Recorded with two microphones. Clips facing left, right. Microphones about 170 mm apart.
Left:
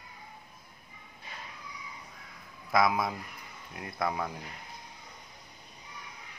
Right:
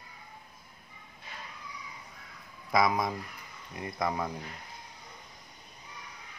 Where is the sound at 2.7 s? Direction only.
Centre (ahead or behind).